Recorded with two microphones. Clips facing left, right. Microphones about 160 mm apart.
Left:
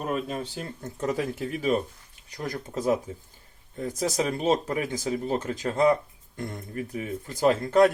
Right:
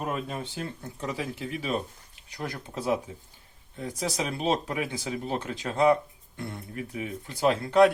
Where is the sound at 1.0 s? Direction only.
45° left (ahead or behind).